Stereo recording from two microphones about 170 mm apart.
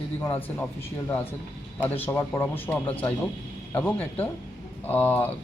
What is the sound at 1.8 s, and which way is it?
Speech, 10° left (ahead or behind).